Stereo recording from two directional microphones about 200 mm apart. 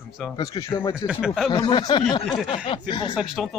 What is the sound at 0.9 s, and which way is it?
Speech, 5° right (ahead or behind).